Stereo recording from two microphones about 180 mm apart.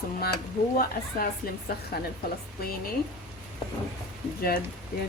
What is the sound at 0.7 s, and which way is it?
Speech, 55° left (ahead or behind).